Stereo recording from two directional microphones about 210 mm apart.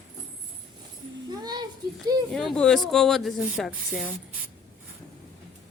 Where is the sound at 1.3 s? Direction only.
20° right (ahead or behind).